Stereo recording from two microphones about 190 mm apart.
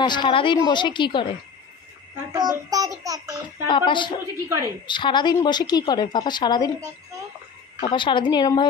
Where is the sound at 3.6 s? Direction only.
25° left (ahead or behind).